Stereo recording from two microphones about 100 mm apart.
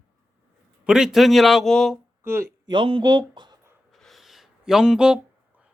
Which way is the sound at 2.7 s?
55° right (ahead or behind).